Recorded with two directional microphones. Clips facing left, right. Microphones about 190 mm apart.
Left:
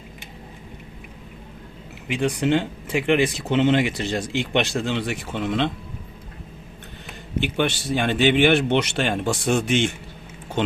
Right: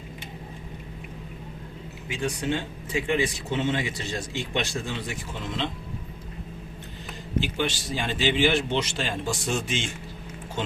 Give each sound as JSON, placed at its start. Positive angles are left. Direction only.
{"t": 2.0, "sound": "speech", "side_deg": 70}
{"t": 7.3, "sound": "speech", "side_deg": 60}